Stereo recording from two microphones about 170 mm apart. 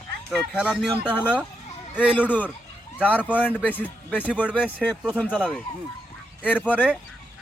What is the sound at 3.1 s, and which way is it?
Speech, 10° right (ahead or behind).